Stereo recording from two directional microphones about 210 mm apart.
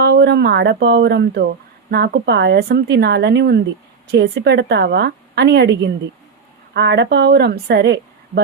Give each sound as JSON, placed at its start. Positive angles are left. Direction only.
{"t": 0.0, "sound": "a woman's voice", "side_deg": -50}